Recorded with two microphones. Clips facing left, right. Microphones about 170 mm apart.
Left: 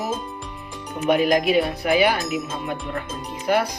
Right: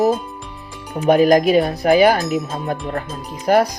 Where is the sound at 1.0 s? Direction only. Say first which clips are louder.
Right 6 dB; 40° right (ahead or behind).